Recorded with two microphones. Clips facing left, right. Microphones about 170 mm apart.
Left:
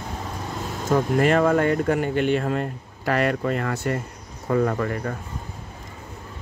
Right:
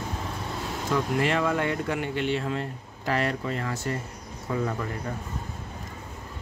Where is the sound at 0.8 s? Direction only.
45° left (ahead or behind).